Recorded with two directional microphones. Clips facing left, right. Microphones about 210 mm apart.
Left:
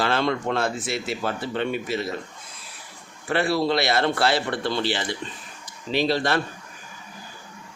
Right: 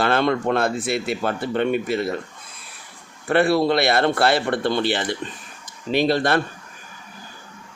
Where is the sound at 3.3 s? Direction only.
55° right (ahead or behind).